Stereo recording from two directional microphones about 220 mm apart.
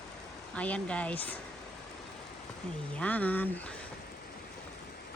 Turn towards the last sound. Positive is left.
turn(degrees=5)  # may be behind; listen again after turning